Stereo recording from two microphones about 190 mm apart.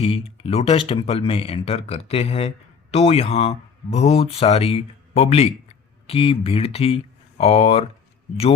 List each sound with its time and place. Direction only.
0.0 s speech: 30° left (ahead or behind)